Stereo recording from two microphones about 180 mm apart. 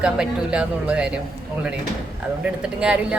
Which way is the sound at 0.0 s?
5° right (ahead or behind).